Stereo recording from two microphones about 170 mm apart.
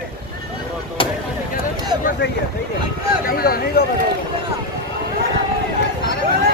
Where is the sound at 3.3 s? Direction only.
60° left (ahead or behind).